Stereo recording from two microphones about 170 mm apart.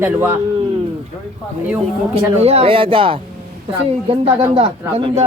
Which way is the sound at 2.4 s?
35° right (ahead or behind).